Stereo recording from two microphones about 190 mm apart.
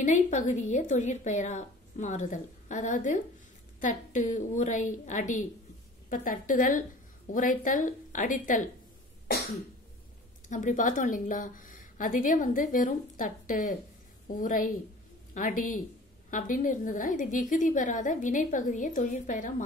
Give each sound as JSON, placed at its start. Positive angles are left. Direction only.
{"t": 0.0, "sound": "a woman's voice", "side_deg": 40}
{"t": 10.5, "sound": "a woman's voice", "side_deg": 40}